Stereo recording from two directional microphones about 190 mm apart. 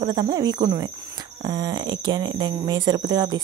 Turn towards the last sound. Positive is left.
turn(degrees=-20)  # may be behind; listen again after turning